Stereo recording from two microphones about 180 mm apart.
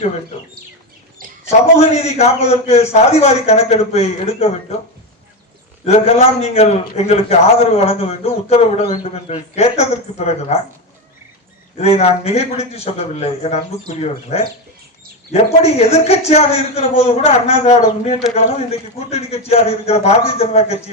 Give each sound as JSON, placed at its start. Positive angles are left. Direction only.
{"t": 1.5, "sound": "a man's voice", "side_deg": 35}
{"t": 5.8, "sound": "a man's voice", "side_deg": 35}
{"t": 11.8, "sound": "a man's voice", "side_deg": 35}